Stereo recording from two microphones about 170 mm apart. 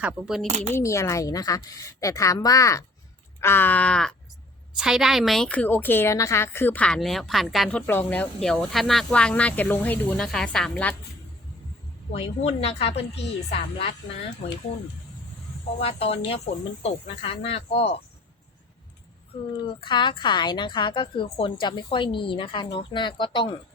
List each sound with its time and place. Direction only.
0.0 s speech: centre (ahead or behind)
0.4 s speech: 40° right (ahead or behind)
0.7 s a woman's voice: 15° left (ahead or behind)
12.1 s speech: 35° left (ahead or behind)
15.8 s speech: 35° left (ahead or behind)
19.6 s a woman's voice: 30° left (ahead or behind)